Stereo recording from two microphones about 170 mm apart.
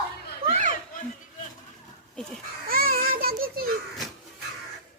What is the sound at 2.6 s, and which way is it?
Children playing, 60° right (ahead or behind).